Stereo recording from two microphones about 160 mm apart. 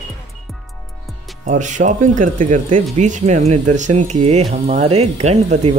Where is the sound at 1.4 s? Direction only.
50° right (ahead or behind).